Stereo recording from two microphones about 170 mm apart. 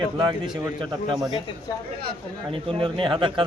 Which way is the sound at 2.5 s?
30° right (ahead or behind).